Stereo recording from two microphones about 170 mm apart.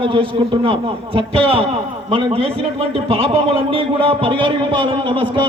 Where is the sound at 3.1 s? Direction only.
35° right (ahead or behind).